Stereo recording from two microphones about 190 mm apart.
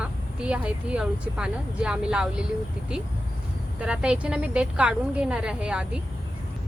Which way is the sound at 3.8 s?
5° right (ahead or behind).